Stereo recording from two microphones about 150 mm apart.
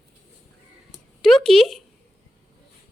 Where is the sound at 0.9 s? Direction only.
Centre (ahead or behind).